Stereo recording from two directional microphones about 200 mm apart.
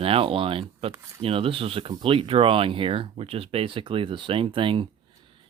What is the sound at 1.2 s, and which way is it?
Speech, 30° right (ahead or behind).